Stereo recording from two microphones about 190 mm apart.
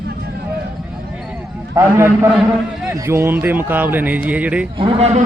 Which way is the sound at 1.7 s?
15° right (ahead or behind).